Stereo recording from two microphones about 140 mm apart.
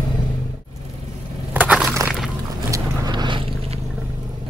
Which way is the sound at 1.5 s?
10° right (ahead or behind).